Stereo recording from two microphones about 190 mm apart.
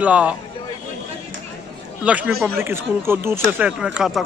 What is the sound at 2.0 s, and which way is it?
Speech, 5° right (ahead or behind).